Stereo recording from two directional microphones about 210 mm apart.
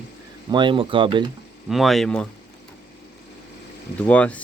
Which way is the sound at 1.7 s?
Centre (ahead or behind).